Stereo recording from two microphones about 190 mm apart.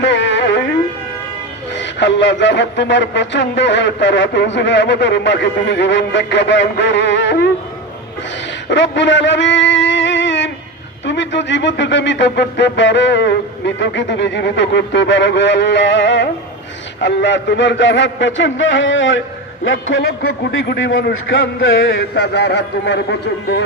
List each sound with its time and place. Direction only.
0.0 s music: 70° left (ahead or behind)
1.8 s speech: 70° left (ahead or behind)
8.7 s a sound: 70° left (ahead or behind)
11.0 s speech: 70° left (ahead or behind)